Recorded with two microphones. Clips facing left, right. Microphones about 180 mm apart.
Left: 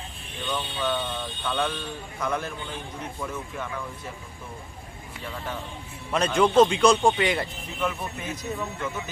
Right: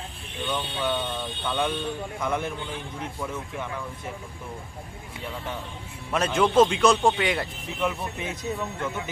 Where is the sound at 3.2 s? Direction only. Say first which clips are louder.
Even; 10° right (ahead or behind).